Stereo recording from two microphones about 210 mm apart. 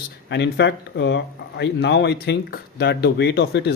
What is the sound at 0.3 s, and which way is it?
Speech, 55° left (ahead or behind).